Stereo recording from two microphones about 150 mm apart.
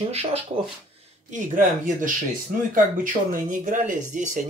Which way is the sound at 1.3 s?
65° right (ahead or behind).